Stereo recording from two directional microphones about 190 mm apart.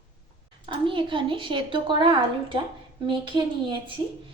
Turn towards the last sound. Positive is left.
turn(degrees=-25)  # may be behind; listen again after turning